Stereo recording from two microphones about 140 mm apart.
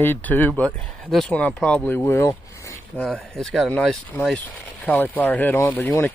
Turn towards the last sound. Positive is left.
turn(degrees=20)  # may be behind; listen again after turning